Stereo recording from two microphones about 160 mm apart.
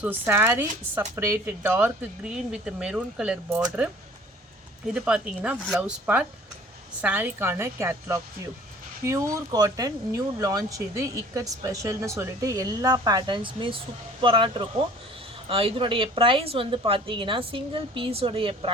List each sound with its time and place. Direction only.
0.0 s speech: 10° right (ahead or behind)
4.9 s speech: 5° right (ahead or behind)
7.0 s a woman's voice: 10° right (ahead or behind); by 18.7 s 35° right (ahead or behind)